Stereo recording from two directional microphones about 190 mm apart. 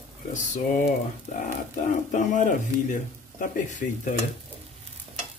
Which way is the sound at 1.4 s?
40° left (ahead or behind).